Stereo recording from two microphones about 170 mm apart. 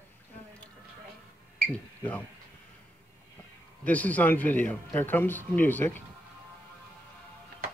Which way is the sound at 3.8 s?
10° left (ahead or behind).